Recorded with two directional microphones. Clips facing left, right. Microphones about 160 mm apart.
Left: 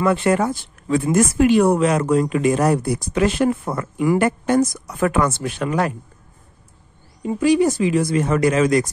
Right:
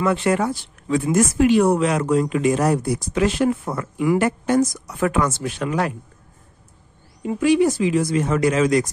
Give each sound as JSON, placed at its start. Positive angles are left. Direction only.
{"t": 0.0, "sound": "speech", "side_deg": 50}
{"t": 7.2, "sound": "speech", "side_deg": 35}